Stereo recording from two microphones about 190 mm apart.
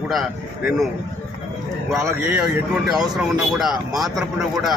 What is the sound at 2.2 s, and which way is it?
Speech, 5° right (ahead or behind).